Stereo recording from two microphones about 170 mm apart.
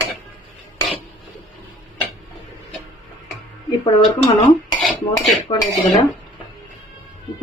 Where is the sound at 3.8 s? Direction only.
25° left (ahead or behind).